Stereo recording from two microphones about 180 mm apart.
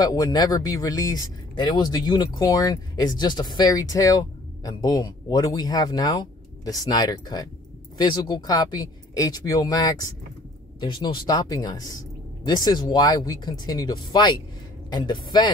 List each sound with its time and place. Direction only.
0.0 s speech: 20° left (ahead or behind)